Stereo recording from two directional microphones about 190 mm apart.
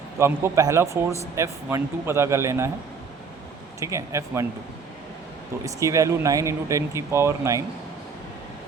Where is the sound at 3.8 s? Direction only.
15° right (ahead or behind).